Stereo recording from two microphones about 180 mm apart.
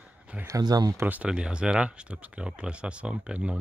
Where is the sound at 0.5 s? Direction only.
20° right (ahead or behind).